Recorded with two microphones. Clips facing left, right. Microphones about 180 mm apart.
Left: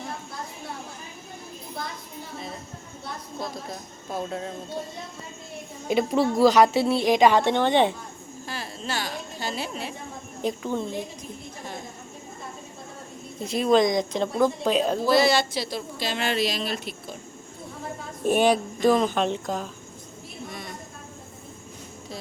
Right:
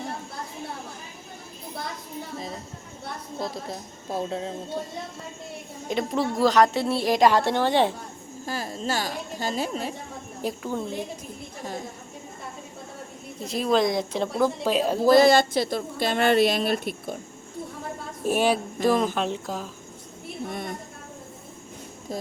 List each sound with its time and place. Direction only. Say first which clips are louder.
3.4 s speech: right 3 dB; 30° right (ahead or behind)
5.9 s a woman's voice: left 4 dB; 5° left (ahead or behind)
8.4 s a woman's voice: right 5 dB; 40° right (ahead or behind)
10.4 s a woman's voice: left 2 dB; 5° right (ahead or behind)
13.4 s a woman's voice: left 2 dB; centre (ahead or behind)
15.0 s speech: right 6 dB; 50° right (ahead or behind)
18.3 s a woman's voice: left 2 dB; 5° right (ahead or behind)
20.5 s a sound: right 6 dB; 55° right (ahead or behind)